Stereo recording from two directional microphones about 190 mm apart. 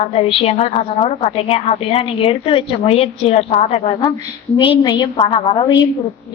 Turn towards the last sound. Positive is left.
turn(degrees=25)  # may be behind; listen again after turning